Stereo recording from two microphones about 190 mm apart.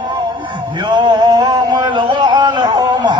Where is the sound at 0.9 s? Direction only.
25° right (ahead or behind).